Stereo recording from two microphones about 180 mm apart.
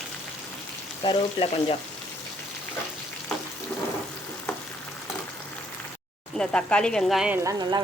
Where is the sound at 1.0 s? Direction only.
30° left (ahead or behind).